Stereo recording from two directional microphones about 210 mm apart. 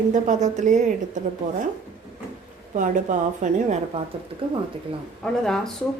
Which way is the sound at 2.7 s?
35° right (ahead or behind).